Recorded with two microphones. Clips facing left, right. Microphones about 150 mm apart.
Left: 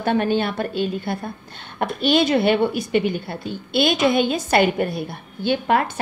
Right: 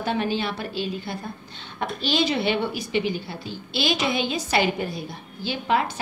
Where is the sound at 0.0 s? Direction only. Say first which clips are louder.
Left 5 dB; 55° left (ahead or behind).